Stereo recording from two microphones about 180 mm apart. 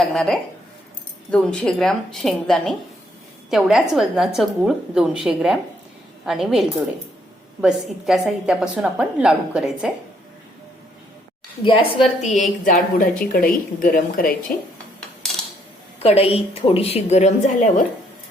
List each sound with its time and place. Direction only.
0.1 s a woman's voice: 5° left (ahead or behind)
11.6 s a woman's voice: 30° left (ahead or behind)
12.2 s a woman's voice: 40° left (ahead or behind)
15.2 s a sound: 5° left (ahead or behind)
16.0 s a woman's voice: 35° left (ahead or behind)